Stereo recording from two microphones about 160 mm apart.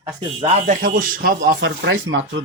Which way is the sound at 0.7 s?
60° right (ahead or behind).